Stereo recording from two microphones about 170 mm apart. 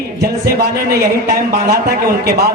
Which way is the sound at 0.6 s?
65° right (ahead or behind).